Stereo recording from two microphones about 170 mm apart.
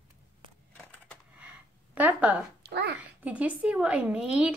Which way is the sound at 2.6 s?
75° right (ahead or behind).